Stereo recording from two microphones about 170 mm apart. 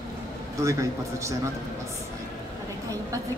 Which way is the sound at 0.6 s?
20° right (ahead or behind).